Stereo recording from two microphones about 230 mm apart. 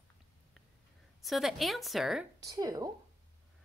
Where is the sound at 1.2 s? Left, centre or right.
Centre.